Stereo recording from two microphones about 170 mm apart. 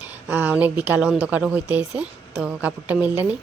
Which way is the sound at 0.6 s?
10° right (ahead or behind).